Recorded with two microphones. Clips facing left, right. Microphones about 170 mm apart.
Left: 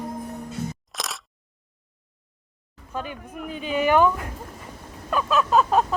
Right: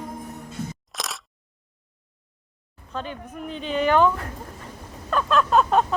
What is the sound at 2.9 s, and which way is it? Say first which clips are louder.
A woman's voice: even; 10° left (ahead or behind).